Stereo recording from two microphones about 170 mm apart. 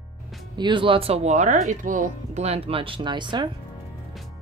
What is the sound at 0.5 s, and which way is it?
Speech, 30° right (ahead or behind).